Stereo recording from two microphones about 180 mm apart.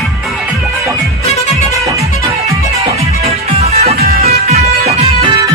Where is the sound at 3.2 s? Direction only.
35° right (ahead or behind).